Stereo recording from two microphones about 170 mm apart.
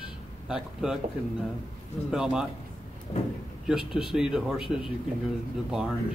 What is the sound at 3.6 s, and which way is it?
Speech, 5° right (ahead or behind).